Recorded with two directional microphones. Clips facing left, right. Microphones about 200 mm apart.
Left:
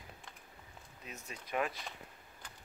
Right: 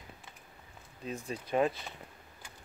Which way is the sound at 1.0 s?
30° right (ahead or behind).